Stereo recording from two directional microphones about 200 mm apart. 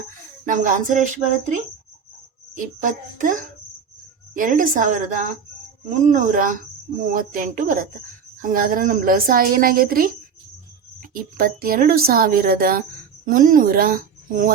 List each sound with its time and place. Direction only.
0.4 s a woman's voice: 40° right (ahead or behind)
2.6 s a woman's voice: 40° right (ahead or behind)
11.1 s speech: 45° right (ahead or behind)